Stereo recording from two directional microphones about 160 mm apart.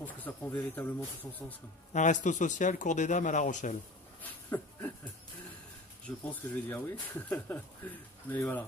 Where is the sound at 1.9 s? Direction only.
50° left (ahead or behind).